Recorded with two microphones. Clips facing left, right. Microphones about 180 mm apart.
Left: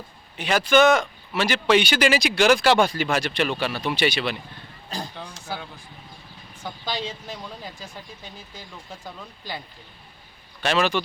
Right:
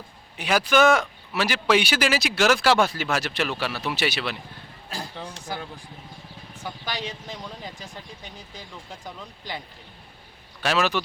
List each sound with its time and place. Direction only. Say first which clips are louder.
0.3 s speech: left 2 dB; 5° right (ahead or behind)
6.8 s speech: left 3 dB; 15° right (ahead or behind)
10.6 s speech: left 1 dB; 5° right (ahead or behind)